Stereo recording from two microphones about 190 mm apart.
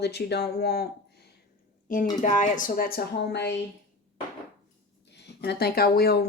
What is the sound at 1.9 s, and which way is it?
Speech, 45° left (ahead or behind).